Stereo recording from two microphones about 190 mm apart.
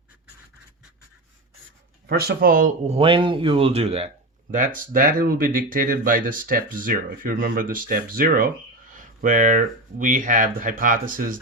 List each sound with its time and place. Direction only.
2.0 s speech: 55° right (ahead or behind); by 4.1 s 30° right (ahead or behind)
4.5 s speech: 45° right (ahead or behind)